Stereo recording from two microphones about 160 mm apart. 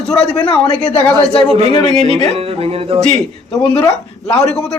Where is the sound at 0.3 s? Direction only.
35° left (ahead or behind).